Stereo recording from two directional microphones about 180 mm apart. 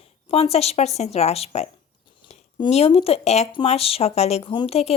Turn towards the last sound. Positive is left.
turn(degrees=35)  # may be behind; listen again after turning